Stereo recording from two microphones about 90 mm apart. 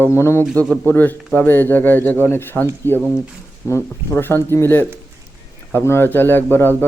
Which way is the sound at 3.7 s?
30° left (ahead or behind).